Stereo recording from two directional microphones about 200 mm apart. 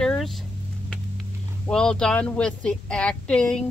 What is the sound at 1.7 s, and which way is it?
Speech, 5° left (ahead or behind).